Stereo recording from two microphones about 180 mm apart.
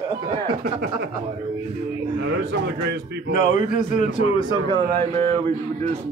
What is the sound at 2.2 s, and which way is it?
A man's voice, 65° right (ahead or behind).